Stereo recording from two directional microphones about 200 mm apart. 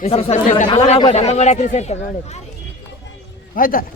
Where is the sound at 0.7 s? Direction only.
25° left (ahead or behind).